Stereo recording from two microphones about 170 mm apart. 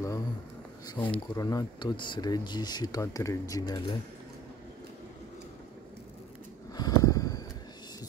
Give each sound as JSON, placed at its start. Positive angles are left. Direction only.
{"t": 0.9, "sound": "speech", "side_deg": 10}
{"t": 1.4, "sound": "speech", "side_deg": 20}
{"t": 6.7, "sound": "a sound", "side_deg": 20}